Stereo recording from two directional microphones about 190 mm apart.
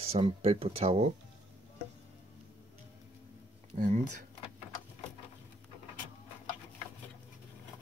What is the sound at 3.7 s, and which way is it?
Speech, 45° right (ahead or behind).